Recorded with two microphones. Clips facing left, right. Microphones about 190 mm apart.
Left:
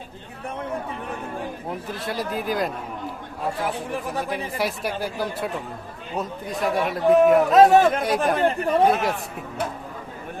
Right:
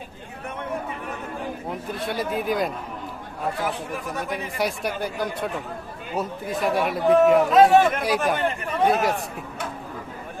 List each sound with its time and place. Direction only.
1.9 s speech: centre (ahead or behind)
4.3 s speech: centre (ahead or behind)
7.5 s a man's voice: 40° left (ahead or behind)
8.0 s speech: centre (ahead or behind)